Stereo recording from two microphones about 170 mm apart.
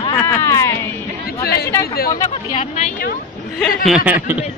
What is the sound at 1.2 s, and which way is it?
Chatter, 65° left (ahead or behind).